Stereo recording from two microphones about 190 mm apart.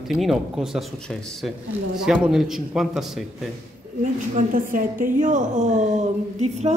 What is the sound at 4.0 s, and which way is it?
A woman's voice, 40° right (ahead or behind).